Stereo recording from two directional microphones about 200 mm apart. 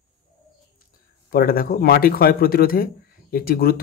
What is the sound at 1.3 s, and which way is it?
A man's voice, 50° left (ahead or behind).